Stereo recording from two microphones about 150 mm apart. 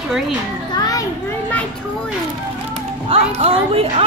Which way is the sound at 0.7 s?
25° left (ahead or behind).